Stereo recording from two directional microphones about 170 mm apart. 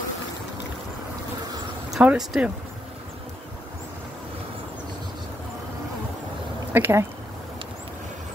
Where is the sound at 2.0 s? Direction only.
Centre (ahead or behind).